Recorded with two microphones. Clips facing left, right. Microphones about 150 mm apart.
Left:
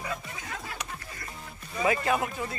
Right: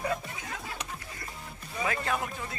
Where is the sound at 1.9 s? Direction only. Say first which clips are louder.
Left 6 dB; 10° left (ahead or behind).